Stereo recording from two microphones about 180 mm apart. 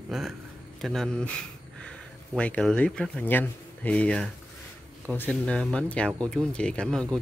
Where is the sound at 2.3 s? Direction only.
5° left (ahead or behind).